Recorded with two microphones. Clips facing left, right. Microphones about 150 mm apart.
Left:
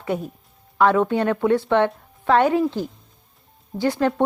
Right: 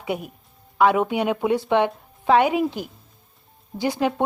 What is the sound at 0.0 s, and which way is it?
A woman's voice, 10° right (ahead or behind).